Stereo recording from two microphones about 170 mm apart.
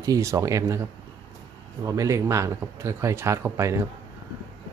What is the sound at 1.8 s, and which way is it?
Speech, 20° right (ahead or behind).